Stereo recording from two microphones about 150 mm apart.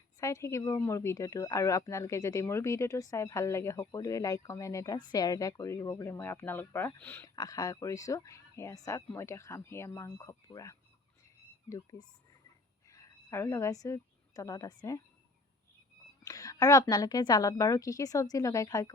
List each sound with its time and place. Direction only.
0.2 s a woman's voice: 20° left (ahead or behind)
16.2 s speech: 25° left (ahead or behind)